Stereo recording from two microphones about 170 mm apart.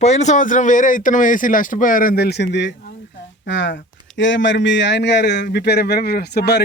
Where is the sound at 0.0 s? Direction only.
40° left (ahead or behind).